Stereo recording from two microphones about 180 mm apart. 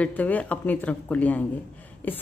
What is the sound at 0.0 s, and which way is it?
A woman's voice, 10° left (ahead or behind).